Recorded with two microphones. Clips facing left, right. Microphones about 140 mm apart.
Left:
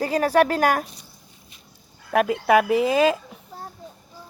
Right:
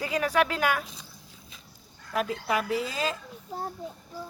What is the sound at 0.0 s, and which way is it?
Speech, 40° left (ahead or behind).